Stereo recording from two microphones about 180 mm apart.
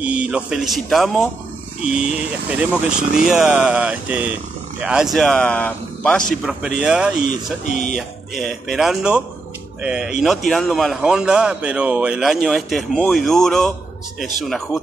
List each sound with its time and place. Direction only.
0.0 s a man's voice: 5° right (ahead or behind)
7.6 s speech: 45° left (ahead or behind)
8.4 s a man's voice: centre (ahead or behind)